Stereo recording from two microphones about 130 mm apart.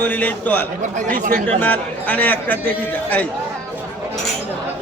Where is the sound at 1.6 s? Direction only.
10° left (ahead or behind).